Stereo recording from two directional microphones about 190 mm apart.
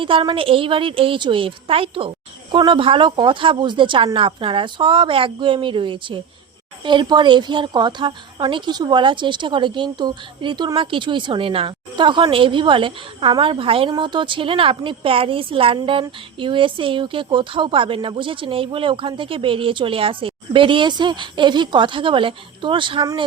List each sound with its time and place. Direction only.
0.0 s a woman's voice: 25° right (ahead or behind)